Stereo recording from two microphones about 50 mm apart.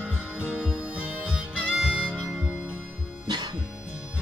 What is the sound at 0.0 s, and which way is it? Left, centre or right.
Music, right.